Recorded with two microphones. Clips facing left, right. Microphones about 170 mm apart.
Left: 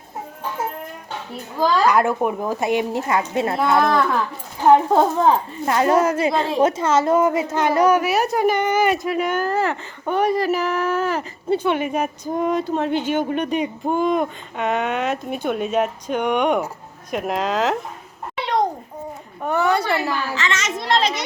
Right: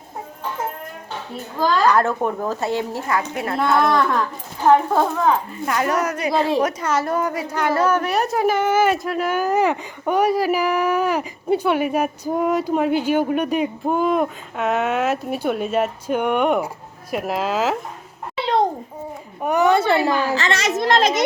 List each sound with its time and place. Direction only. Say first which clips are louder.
1.9 s speech: even; 10° left (ahead or behind)
3.8 s a woman's voice: right 1 dB; centre (ahead or behind)
4.9 s a woman's voice: left 2 dB; 20° left (ahead or behind); by 17.7 s 5° right (ahead or behind)
19.4 s a woman's voice: right 3 dB; 15° right (ahead or behind)
20.3 s a woman's voice: right 4 dB; 35° right (ahead or behind)